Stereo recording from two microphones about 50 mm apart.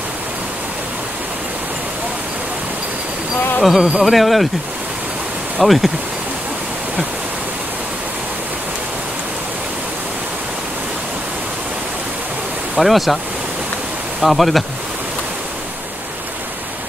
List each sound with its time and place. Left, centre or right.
3.6 s speech: centre
5.6 s speech: centre
12.7 s speech: centre
14.2 s speech: centre